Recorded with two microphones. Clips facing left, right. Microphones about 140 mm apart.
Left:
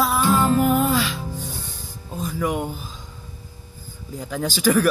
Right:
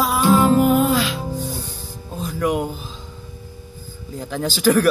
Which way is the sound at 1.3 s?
35° right (ahead or behind).